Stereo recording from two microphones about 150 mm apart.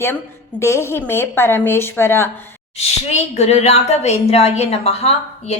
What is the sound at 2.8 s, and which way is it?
A woman's voice, 45° left (ahead or behind).